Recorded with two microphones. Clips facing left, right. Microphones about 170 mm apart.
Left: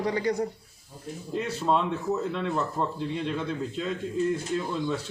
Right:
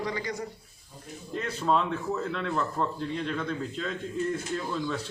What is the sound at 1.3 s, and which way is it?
A man's voice, centre (ahead or behind).